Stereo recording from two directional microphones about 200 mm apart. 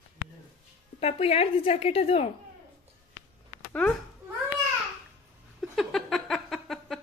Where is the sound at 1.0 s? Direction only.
30° left (ahead or behind).